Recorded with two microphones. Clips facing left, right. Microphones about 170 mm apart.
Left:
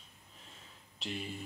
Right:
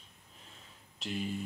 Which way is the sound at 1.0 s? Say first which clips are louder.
Right 4 dB; centre (ahead or behind).